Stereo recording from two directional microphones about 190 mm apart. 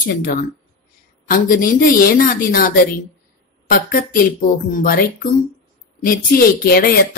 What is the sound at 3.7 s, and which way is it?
Speech, 50° left (ahead or behind).